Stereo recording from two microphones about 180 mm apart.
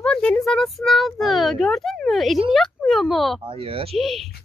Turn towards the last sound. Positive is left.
turn(degrees=0)  # may be behind; listen again after turning